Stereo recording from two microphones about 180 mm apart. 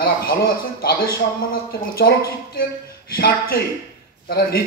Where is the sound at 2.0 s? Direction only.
55° left (ahead or behind).